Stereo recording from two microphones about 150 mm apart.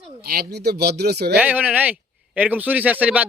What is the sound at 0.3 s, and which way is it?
A man's voice, 90° right.